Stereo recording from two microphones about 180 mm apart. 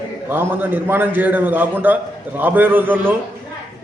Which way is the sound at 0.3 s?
10° right (ahead or behind).